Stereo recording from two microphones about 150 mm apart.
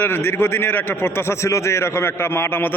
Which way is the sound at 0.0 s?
15° left (ahead or behind).